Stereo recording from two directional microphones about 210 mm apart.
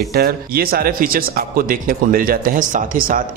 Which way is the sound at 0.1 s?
45° right (ahead or behind).